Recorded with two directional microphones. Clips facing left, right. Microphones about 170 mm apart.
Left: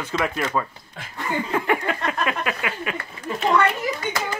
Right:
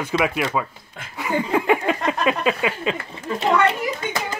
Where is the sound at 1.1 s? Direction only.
10° right (ahead or behind).